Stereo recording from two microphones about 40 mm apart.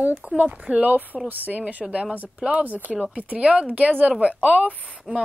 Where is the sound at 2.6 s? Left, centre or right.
Right.